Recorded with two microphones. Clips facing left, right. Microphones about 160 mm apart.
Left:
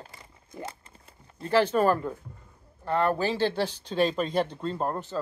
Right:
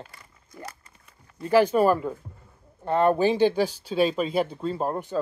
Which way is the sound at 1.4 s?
10° right (ahead or behind).